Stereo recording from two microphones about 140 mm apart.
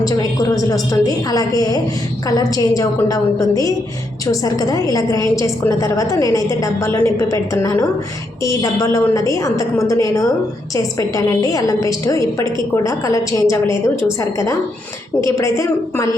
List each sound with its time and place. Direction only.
0.0 s a woman's voice: 25° left (ahead or behind)
15.2 s a woman's voice: 20° left (ahead or behind)